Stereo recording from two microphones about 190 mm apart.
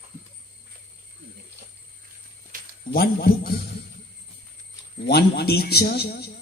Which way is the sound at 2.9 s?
55° left (ahead or behind).